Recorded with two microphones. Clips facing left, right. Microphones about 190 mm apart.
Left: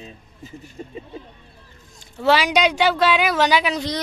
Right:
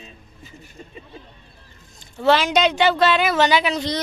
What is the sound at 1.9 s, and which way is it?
Speech, 10° left (ahead or behind).